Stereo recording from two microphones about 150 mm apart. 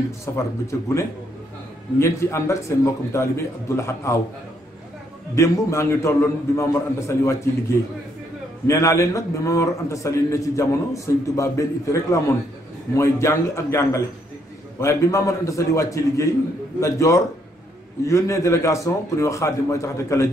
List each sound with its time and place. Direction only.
0.2 s a man's voice: 20° left (ahead or behind)
5.3 s a man's voice: 20° left (ahead or behind)
8.6 s a man's voice: 20° left (ahead or behind)